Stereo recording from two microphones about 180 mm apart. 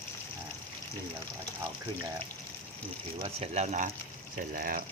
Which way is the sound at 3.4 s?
35° right (ahead or behind).